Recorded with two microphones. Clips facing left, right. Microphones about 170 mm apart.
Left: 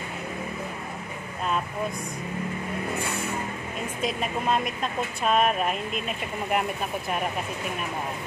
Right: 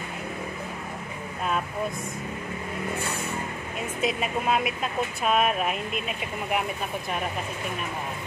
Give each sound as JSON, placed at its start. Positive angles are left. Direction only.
{"t": 4.0, "sound": "speech", "side_deg": -5}